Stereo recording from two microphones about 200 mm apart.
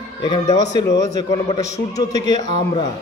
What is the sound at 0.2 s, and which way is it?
A man's voice, 20° left (ahead or behind).